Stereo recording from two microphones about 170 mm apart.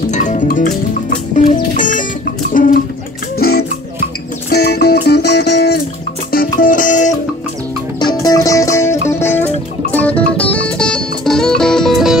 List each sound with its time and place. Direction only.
0.1 s music: 45° left (ahead or behind)
2.5 s a sound: 55° left (ahead or behind)
3.3 s music: 65° left (ahead or behind)
6.3 s music: 55° left (ahead or behind)
8.0 s music: 25° left (ahead or behind); by 12.2 s centre (ahead or behind)